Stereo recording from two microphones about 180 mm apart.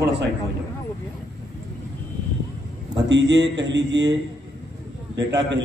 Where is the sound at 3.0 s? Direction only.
90° right.